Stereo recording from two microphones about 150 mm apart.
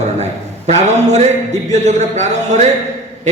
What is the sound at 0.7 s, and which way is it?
A man's voice, 50° right (ahead or behind).